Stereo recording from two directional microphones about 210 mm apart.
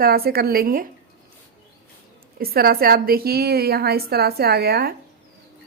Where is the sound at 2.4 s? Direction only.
45° right (ahead or behind).